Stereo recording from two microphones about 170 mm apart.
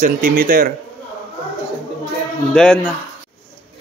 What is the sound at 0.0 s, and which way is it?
Speech, 60° right (ahead or behind).